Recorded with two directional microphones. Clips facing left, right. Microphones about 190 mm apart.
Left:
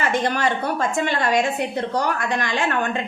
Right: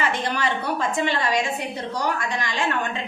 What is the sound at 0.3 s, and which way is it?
A woman's voice, 50° left (ahead or behind).